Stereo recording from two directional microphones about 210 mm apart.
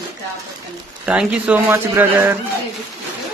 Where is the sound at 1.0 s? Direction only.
5° right (ahead or behind).